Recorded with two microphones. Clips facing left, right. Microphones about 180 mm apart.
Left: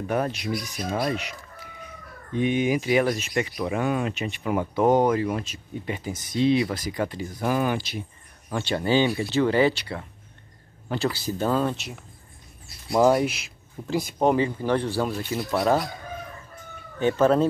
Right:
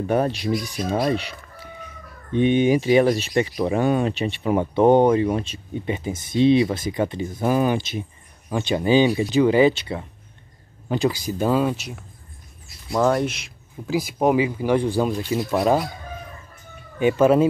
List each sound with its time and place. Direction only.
0.1 s speech: 30° right (ahead or behind); by 15.9 s 15° right (ahead or behind)
17.0 s speech: 10° right (ahead or behind)